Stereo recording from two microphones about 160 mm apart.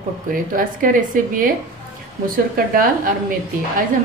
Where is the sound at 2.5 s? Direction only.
60° right (ahead or behind).